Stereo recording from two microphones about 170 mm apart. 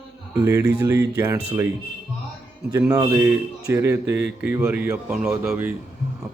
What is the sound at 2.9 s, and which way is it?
Speech, 20° right (ahead or behind).